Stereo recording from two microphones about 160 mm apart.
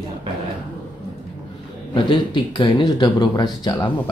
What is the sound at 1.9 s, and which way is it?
Speech, 30° left (ahead or behind).